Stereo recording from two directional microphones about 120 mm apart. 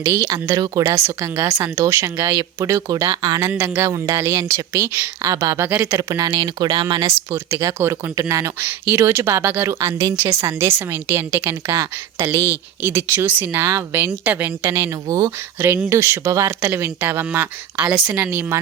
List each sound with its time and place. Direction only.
0.0 s a woman's voice: 25° right (ahead or behind)
3.5 s a woman's voice: 20° right (ahead or behind)
6.0 s speech: 30° right (ahead or behind)
7.5 s a woman's voice: 20° right (ahead or behind)